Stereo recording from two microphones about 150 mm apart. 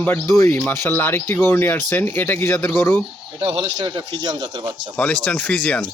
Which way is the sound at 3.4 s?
30° right (ahead or behind).